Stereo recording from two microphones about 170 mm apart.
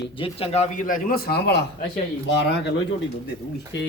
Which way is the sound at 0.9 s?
60° left (ahead or behind).